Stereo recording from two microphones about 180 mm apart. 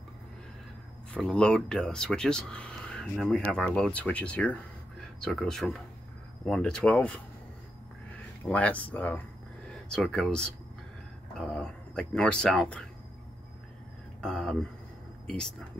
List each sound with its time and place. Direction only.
1.1 s speech: 5° left (ahead or behind)
8.5 s speech: 5° left (ahead or behind)
14.2 s speech: 5° left (ahead or behind)